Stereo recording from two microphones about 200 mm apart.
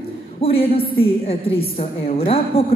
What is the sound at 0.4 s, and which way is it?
A woman's voice, 30° left (ahead or behind).